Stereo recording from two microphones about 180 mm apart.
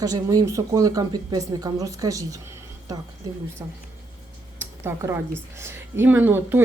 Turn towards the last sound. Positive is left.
turn(degrees=-10)  # may be behind; listen again after turning